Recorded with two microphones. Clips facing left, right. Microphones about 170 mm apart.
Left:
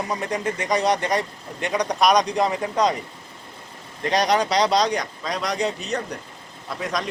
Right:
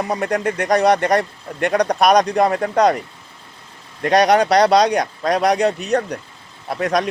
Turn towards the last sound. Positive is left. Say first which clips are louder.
# right 8 dB
turn(degrees=-65)  # may be behind; listen again after turning